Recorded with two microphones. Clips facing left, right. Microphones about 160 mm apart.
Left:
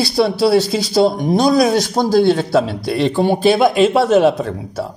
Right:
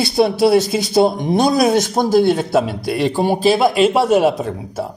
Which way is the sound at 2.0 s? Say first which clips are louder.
Left 1 dB; 50° right (ahead or behind).